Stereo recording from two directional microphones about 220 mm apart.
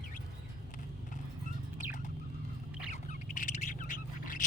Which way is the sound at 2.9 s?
35° left (ahead or behind).